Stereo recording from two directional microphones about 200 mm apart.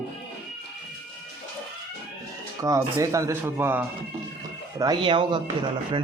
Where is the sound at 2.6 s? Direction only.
15° right (ahead or behind).